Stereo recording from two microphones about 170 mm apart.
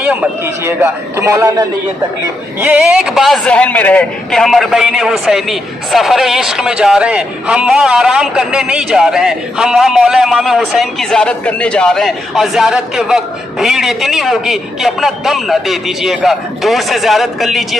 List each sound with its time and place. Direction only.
0.0 s a man's voice: 10° right (ahead or behind)
2.6 s a man's voice: 10° right (ahead or behind)